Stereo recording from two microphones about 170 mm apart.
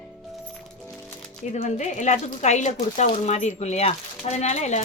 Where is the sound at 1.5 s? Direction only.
45° left (ahead or behind).